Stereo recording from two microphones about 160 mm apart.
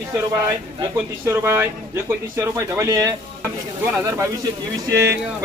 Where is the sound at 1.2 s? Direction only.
15° right (ahead or behind).